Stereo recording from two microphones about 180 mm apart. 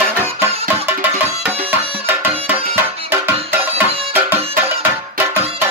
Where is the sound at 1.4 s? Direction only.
10° right (ahead or behind).